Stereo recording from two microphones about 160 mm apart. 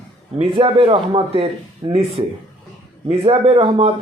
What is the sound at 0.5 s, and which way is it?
Speech, 35° right (ahead or behind).